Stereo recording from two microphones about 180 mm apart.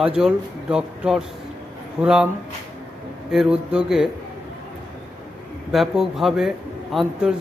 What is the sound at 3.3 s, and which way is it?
Speech, 5° right (ahead or behind).